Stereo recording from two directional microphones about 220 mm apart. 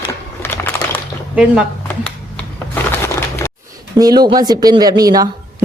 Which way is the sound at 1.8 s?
5° left (ahead or behind).